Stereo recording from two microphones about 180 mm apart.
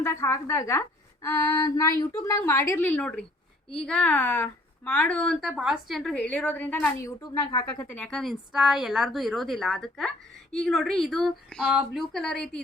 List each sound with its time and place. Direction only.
0.0 s a woman's voice: 15° left (ahead or behind)